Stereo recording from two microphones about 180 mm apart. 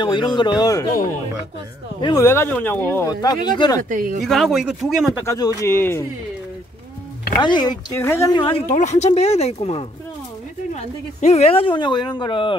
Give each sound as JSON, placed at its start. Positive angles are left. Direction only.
{"t": 0.0, "sound": "speech", "side_deg": 25}
{"t": 2.0, "sound": "speech", "side_deg": 25}
{"t": 2.2, "sound": "speech", "side_deg": 10}
{"t": 3.1, "sound": "speech", "side_deg": 20}
{"t": 3.9, "sound": "speech", "side_deg": -50}
{"t": 4.2, "sound": "speech", "side_deg": 0}
{"t": 5.2, "sound": "speech", "side_deg": 15}
{"t": 7.4, "sound": "speech", "side_deg": 25}
{"t": 8.4, "sound": "speech", "side_deg": 30}
{"t": 8.6, "sound": "speech", "side_deg": 40}